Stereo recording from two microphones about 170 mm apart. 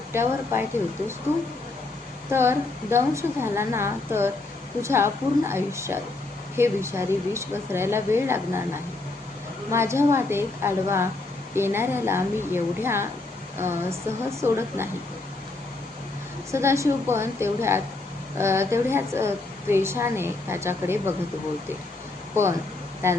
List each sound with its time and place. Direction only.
0.1 s speech: 15° right (ahead or behind)
2.3 s speech: 15° right (ahead or behind)
9.6 s speech: 15° right (ahead or behind)
16.5 s speech: 15° right (ahead or behind)
23.0 s speech: 15° right (ahead or behind)